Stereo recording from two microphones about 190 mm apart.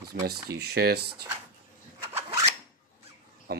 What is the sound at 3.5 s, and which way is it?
Speech, 55° right (ahead or behind).